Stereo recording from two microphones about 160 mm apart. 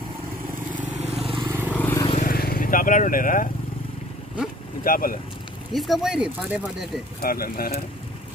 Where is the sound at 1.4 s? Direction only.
15° right (ahead or behind).